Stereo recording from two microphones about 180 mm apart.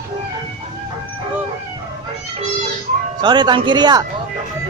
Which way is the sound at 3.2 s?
25° right (ahead or behind).